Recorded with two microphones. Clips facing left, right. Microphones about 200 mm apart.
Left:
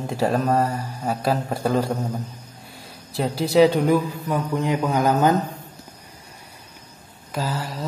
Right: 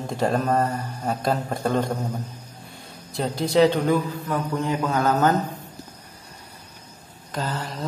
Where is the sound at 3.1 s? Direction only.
5° left (ahead or behind).